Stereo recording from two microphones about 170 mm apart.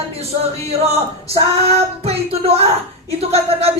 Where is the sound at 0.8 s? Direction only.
40° right (ahead or behind).